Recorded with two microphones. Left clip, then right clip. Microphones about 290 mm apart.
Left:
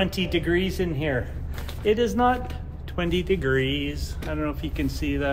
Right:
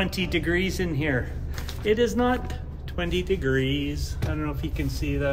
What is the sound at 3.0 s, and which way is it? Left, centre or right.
Speech, centre.